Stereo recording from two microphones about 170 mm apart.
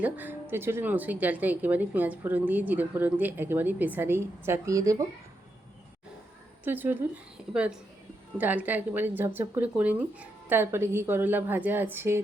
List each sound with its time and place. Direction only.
0.0 s speech: 10° right (ahead or behind)
6.7 s a woman's voice: 10° right (ahead or behind)